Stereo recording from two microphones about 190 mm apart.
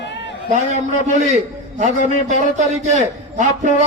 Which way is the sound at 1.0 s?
40° right (ahead or behind).